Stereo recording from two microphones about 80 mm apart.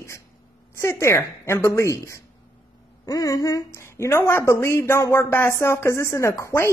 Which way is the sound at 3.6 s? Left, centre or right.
Left.